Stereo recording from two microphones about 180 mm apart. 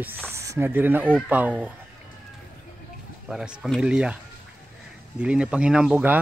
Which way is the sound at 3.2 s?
5° right (ahead or behind).